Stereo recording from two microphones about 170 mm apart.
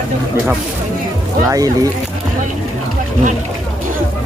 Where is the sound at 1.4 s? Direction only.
20° right (ahead or behind).